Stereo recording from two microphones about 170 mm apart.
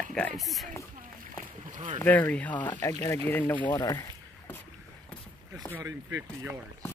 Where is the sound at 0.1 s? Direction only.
5° left (ahead or behind).